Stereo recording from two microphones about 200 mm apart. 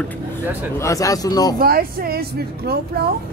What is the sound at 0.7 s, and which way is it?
Speech, 15° left (ahead or behind).